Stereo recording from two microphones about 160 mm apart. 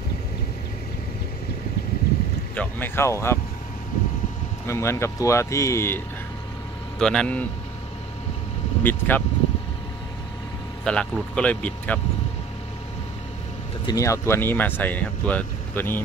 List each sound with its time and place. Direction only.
2.5 s speech: 10° left (ahead or behind)
4.6 s speech: 15° left (ahead or behind)
7.0 s speech: 5° left (ahead or behind)
8.8 s speech: 10° left (ahead or behind)
10.8 s speech: 5° left (ahead or behind)
13.8 s speech: 20° left (ahead or behind)